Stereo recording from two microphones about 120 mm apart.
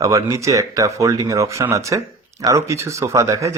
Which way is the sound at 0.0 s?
25° right (ahead or behind).